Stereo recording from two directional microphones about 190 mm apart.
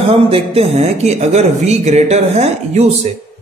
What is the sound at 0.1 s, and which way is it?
Speech, 30° right (ahead or behind).